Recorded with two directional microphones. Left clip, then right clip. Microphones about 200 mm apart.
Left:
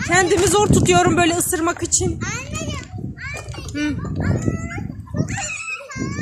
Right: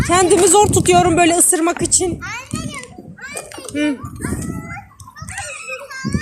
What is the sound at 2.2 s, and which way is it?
Speech, 40° left (ahead or behind).